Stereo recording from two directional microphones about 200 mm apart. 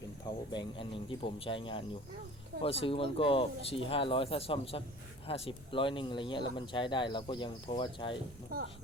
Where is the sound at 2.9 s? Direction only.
25° left (ahead or behind).